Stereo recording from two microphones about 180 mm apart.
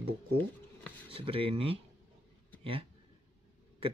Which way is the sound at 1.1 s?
30° right (ahead or behind).